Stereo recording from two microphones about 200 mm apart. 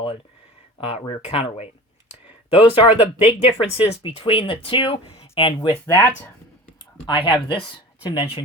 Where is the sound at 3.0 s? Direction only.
30° left (ahead or behind); by 6.1 s 10° left (ahead or behind).